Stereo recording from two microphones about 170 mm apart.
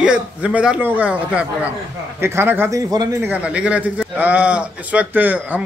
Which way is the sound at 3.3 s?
5° right (ahead or behind).